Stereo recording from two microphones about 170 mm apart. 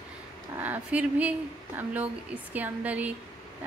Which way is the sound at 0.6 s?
10° right (ahead or behind).